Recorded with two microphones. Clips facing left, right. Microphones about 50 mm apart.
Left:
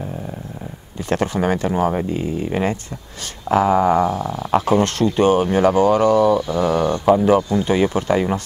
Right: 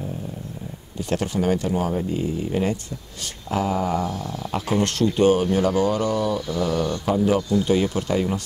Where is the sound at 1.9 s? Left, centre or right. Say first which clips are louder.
Left 3 dB; left.